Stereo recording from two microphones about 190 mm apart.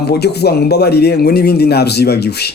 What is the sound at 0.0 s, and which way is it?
Speech, 60° left (ahead or behind).